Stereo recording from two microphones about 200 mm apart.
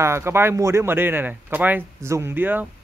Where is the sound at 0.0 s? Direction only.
15° right (ahead or behind).